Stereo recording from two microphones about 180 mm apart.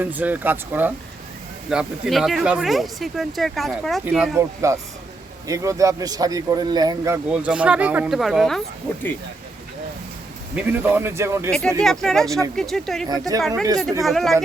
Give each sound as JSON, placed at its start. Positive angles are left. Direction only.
{"t": 0.0, "sound": "speech", "side_deg": -10}
{"t": 4.4, "sound": "speech", "side_deg": -15}
{"t": 10.5, "sound": "speech", "side_deg": -10}
{"t": 11.8, "sound": "speech", "side_deg": 0}
{"t": 13.1, "sound": "speech", "side_deg": -20}
{"t": 14.0, "sound": "speech", "side_deg": 0}